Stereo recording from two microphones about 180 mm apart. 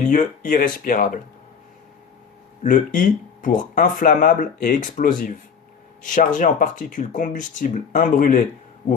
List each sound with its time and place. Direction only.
0.1 s speech: 45° left (ahead or behind)
2.6 s speech: 45° left (ahead or behind)